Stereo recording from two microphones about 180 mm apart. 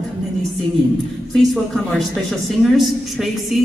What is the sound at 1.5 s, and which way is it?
A man's voice, centre (ahead or behind).